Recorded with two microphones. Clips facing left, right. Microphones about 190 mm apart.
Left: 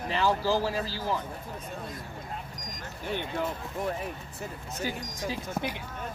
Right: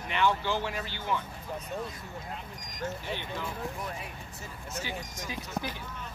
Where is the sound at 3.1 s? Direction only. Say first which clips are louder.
Left 5 dB; 50° left (ahead or behind).